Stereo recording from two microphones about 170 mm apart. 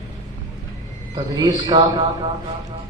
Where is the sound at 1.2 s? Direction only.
25° right (ahead or behind).